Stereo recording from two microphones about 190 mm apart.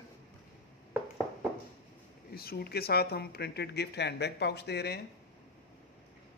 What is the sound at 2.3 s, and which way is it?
Speech, 55° left (ahead or behind).